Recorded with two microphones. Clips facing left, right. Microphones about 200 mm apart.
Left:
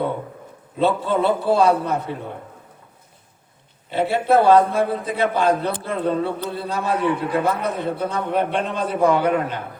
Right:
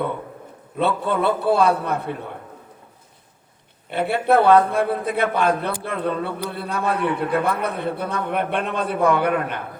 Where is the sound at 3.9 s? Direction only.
60° right (ahead or behind).